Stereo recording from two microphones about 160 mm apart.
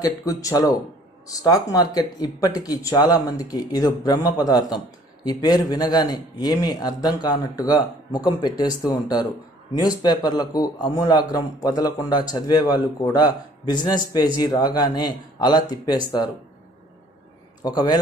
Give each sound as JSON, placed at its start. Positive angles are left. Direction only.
{"t": 0.0, "sound": "speech", "side_deg": 20}
{"t": 17.6, "sound": "speech", "side_deg": 25}